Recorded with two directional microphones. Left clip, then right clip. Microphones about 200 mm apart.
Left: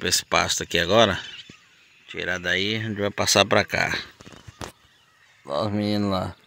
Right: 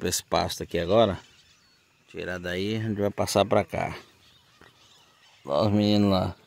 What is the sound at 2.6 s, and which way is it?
Speech, 20° right (ahead or behind).